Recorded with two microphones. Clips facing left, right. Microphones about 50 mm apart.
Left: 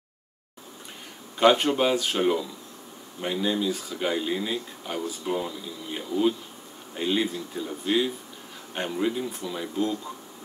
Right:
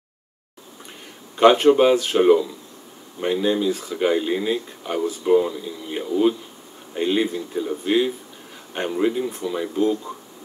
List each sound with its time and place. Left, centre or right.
1.3 s speech: centre
6.9 s insect: centre
7.3 s speech: centre